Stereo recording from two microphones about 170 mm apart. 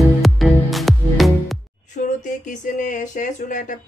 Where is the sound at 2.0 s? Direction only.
50° left (ahead or behind).